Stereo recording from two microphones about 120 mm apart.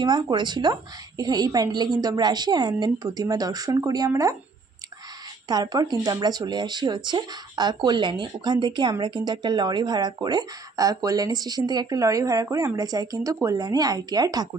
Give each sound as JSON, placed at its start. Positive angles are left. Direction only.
{"t": 0.0, "sound": "speech", "side_deg": -35}
{"t": 5.5, "sound": "speech", "side_deg": -35}